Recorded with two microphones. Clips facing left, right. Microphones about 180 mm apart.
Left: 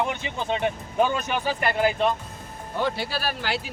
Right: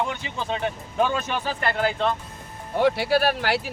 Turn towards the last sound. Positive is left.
turn(degrees=-65)  # may be behind; listen again after turning